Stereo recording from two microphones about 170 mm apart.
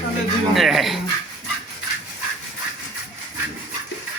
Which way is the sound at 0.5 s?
Centre (ahead or behind).